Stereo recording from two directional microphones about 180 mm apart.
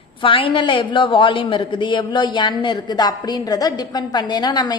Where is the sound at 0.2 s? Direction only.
30° left (ahead or behind).